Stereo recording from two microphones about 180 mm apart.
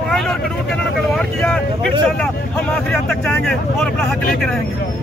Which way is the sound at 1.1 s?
5° left (ahead or behind).